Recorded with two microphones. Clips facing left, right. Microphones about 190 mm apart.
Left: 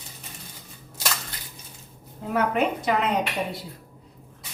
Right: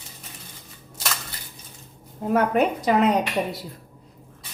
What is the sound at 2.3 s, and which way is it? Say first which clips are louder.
Speech: right 3 dB; 40° right (ahead or behind).